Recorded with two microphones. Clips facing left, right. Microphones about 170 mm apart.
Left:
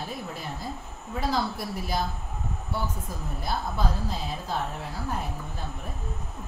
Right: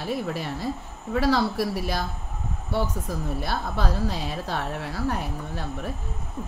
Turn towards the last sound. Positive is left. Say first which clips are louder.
# right 5 dB
turn(degrees=-80)